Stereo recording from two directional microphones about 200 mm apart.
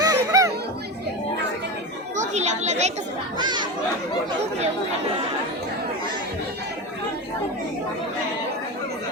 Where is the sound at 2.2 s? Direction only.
35° right (ahead or behind).